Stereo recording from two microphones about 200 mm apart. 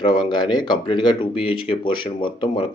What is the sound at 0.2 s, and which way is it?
Speech, 20° left (ahead or behind).